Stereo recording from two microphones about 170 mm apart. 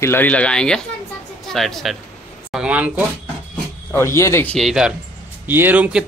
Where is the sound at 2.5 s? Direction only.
5° right (ahead or behind).